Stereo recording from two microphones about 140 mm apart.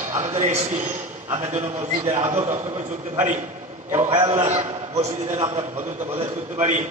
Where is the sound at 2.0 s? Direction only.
15° right (ahead or behind).